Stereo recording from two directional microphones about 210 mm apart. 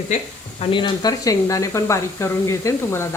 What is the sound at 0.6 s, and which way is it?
Speech, 20° left (ahead or behind).